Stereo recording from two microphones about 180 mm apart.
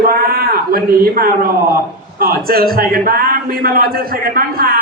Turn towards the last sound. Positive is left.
turn(degrees=-55)  # may be behind; listen again after turning